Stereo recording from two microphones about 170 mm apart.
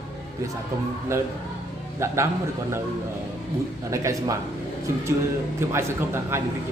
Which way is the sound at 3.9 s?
20° right (ahead or behind).